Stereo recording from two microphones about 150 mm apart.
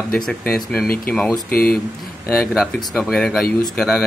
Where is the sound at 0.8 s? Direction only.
75° left (ahead or behind).